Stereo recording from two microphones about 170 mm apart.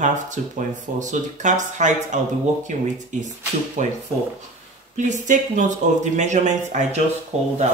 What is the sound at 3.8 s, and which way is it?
Speech, 45° right (ahead or behind).